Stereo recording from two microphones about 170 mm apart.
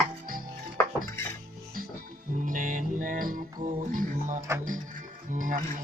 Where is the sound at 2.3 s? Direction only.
50° right (ahead or behind).